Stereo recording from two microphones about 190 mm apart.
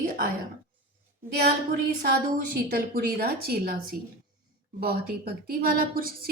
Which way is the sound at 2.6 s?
50° right (ahead or behind).